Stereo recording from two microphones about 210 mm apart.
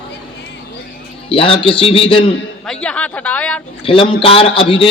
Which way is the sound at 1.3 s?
25° left (ahead or behind).